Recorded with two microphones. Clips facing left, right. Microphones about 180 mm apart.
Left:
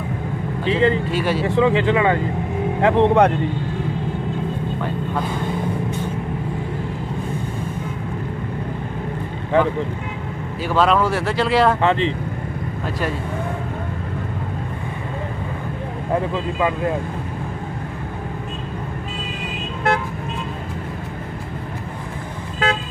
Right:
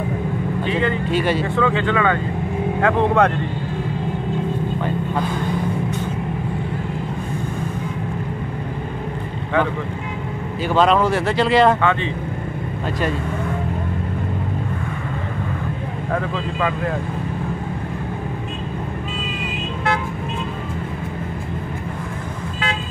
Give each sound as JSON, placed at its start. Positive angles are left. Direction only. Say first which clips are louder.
{"t": 0.7, "sound": "speech", "louder": "left 5 dB", "side_deg": 30}
{"t": 1.1, "sound": "speech", "louder": "right 2 dB", "side_deg": 5}
{"t": 1.6, "sound": "speech", "louder": "left 4 dB", "side_deg": 25}
{"t": 10.7, "sound": "speech", "louder": "right 1 dB", "side_deg": 0}